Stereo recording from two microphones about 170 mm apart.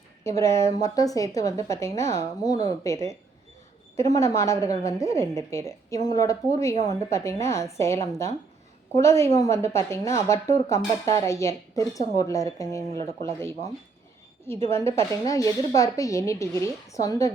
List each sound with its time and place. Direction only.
0.3 s a woman's voice: 15° left (ahead or behind)